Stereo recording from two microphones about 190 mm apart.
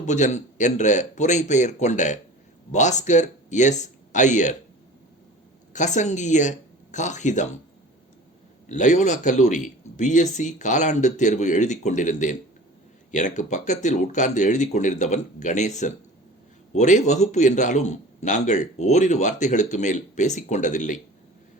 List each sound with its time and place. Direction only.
0.0 s a man's voice: 40° left (ahead or behind)
5.7 s a man's voice: 40° left (ahead or behind)
8.7 s a man's voice: 40° left (ahead or behind)